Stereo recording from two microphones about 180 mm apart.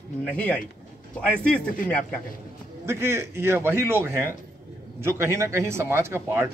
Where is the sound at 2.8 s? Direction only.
15° right (ahead or behind).